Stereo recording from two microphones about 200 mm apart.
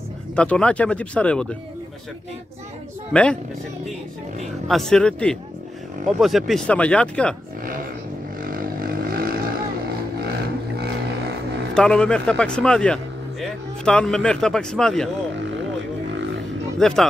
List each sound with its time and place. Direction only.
0.4 s a man's voice: 5° left (ahead or behind)
3.1 s a man's voice: 5° left (ahead or behind)
4.6 s a man's voice: centre (ahead or behind)
8.4 s vehicle: 45° right (ahead or behind)
11.7 s a man's voice: 5° left (ahead or behind)
16.7 s speech: centre (ahead or behind)